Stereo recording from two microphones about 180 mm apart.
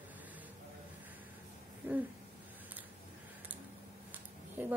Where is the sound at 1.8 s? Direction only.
10° right (ahead or behind).